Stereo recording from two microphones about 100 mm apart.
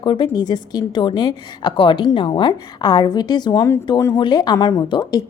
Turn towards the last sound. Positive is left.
turn(degrees=45)  # may be behind; listen again after turning